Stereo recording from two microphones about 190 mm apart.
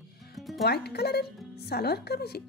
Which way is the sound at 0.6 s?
55° left (ahead or behind).